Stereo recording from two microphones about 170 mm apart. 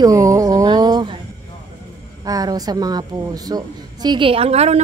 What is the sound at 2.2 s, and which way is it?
A woman's voice, 20° right (ahead or behind).